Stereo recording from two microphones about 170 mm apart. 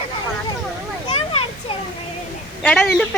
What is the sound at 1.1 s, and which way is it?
Children playing, 35° left (ahead or behind).